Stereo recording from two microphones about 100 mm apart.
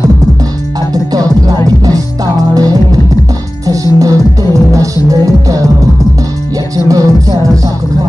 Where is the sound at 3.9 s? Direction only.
35° right (ahead or behind).